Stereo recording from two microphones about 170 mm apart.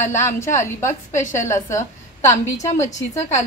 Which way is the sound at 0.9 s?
45° left (ahead or behind).